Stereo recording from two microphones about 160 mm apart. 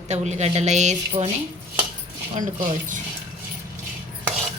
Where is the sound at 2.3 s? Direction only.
55° right (ahead or behind).